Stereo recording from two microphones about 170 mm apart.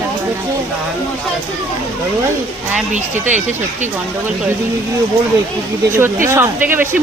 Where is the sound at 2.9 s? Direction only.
45° right (ahead or behind).